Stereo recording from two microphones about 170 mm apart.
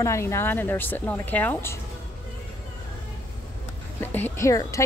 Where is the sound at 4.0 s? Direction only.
10° left (ahead or behind).